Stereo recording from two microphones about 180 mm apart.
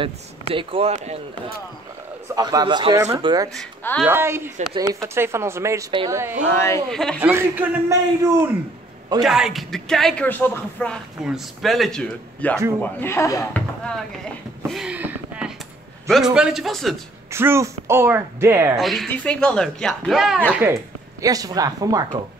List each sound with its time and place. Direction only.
0.0 s speech: 30° right (ahead or behind)
2.3 s speech: 20° right (ahead or behind)
3.5 s speech: 5° left (ahead or behind)
4.0 s speech: 15° right (ahead or behind)
6.5 s speech: 15° left (ahead or behind)
6.9 s speech: 5° left (ahead or behind)
7.2 s speech: 10° right (ahead or behind)
9.2 s speech: centre (ahead or behind); by 13.6 s 15° left (ahead or behind)
14.7 s a sound: 5° right (ahead or behind)
16.1 s speech: 5° right (ahead or behind)
17.3 s speech: 15° right (ahead or behind)
18.8 s speech: centre (ahead or behind)
21.2 s speech: 20° right (ahead or behind)